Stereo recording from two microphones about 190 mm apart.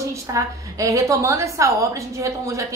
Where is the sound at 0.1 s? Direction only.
15° right (ahead or behind).